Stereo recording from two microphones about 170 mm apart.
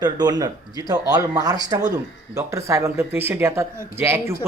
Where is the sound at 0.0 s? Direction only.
25° right (ahead or behind).